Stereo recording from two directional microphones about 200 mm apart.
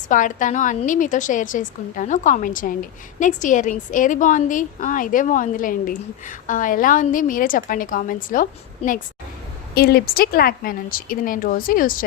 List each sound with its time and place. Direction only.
0.1 s a woman's voice: 40° left (ahead or behind)